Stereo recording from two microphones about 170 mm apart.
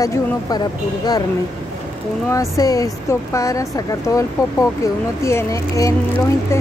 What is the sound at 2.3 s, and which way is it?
A woman's voice, 20° left (ahead or behind).